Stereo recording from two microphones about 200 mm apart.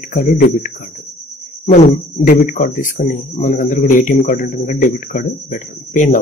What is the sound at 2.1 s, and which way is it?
Speech, 40° left (ahead or behind).